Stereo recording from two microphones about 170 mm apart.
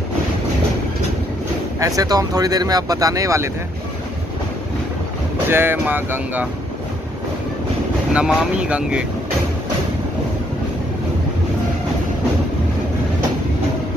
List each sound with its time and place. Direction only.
1.8 s speech: 20° right (ahead or behind)
5.5 s speech: 15° right (ahead or behind)
8.1 s speech: 5° right (ahead or behind)